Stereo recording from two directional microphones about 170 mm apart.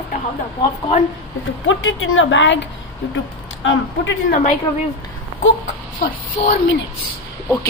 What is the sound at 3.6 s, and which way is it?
Speech, 90° left.